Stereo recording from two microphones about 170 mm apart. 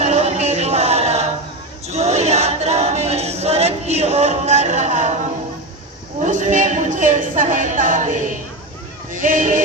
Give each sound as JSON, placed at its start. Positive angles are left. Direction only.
{"t": 0.0, "sound": "music", "side_deg": -40}
{"t": 1.9, "sound": "choir", "side_deg": -40}
{"t": 6.2, "sound": "music", "side_deg": -45}
{"t": 9.1, "sound": "a man's voice", "side_deg": -50}